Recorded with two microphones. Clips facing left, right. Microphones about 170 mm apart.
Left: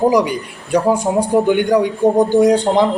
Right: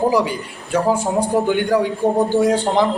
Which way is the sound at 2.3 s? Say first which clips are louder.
Left 5 dB; 20° left (ahead or behind).